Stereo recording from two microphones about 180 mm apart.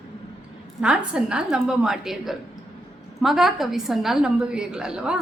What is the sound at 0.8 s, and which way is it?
A woman's voice, 5° right (ahead or behind).